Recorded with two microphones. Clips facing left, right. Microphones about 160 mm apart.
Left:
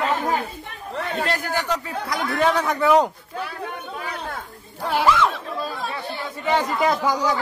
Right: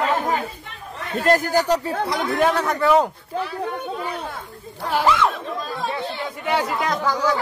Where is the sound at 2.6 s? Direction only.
Centre (ahead or behind).